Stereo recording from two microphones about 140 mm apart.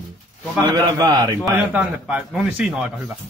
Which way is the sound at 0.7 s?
30° right (ahead or behind).